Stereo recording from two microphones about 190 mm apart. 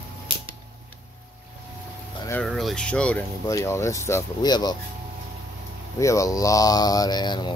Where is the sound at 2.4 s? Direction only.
Centre (ahead or behind); by 4.7 s 20° left (ahead or behind).